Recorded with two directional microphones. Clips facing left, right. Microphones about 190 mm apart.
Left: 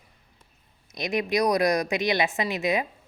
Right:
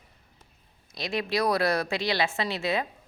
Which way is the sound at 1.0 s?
20° left (ahead or behind).